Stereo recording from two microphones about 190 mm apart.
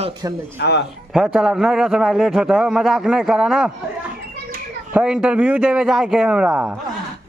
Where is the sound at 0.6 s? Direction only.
60° left (ahead or behind).